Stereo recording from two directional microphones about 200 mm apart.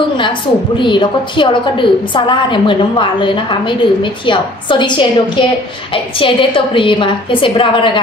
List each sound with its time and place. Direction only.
0.7 s a woman's voice: 25° left (ahead or behind)